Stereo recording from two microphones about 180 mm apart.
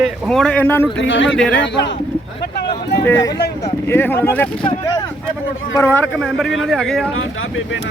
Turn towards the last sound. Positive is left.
turn(degrees=0)  # may be behind; listen again after turning